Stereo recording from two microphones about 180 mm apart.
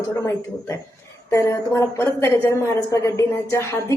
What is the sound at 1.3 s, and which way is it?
Speech, 15° left (ahead or behind).